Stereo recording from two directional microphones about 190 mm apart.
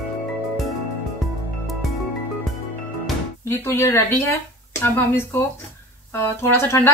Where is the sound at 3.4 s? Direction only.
15° left (ahead or behind).